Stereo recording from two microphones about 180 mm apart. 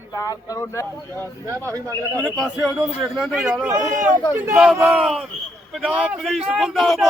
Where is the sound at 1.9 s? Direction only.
10° left (ahead or behind).